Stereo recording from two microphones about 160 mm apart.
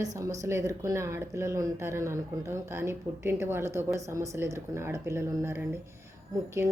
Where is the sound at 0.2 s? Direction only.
20° right (ahead or behind).